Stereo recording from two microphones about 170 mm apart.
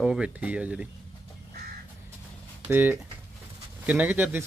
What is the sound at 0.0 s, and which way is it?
Speech, 5° right (ahead or behind).